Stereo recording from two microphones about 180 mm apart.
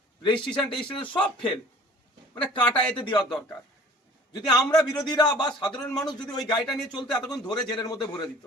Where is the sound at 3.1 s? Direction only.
25° left (ahead or behind).